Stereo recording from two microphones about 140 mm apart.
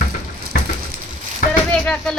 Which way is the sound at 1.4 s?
70° left (ahead or behind).